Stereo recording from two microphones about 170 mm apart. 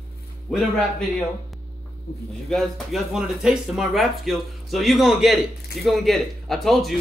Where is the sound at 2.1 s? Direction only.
60° left (ahead or behind).